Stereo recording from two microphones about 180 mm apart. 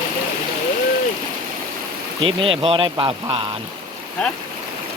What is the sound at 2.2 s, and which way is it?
Speech, 30° right (ahead or behind).